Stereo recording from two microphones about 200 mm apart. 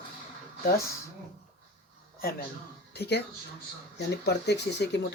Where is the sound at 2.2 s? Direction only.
50° left (ahead or behind).